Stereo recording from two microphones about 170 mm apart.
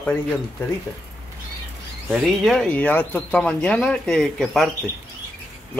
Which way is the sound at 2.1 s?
Centre (ahead or behind).